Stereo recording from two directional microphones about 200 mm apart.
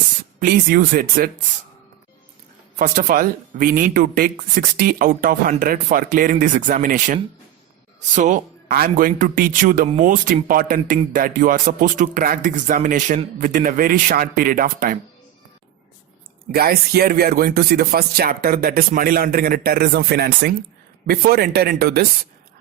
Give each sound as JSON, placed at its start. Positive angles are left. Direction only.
{"t": 0.3, "sound": "speech", "side_deg": -45}
{"t": 2.7, "sound": "speech", "side_deg": -40}
{"t": 16.5, "sound": "speech", "side_deg": -50}